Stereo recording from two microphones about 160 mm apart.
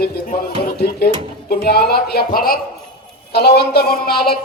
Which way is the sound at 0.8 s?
90° left.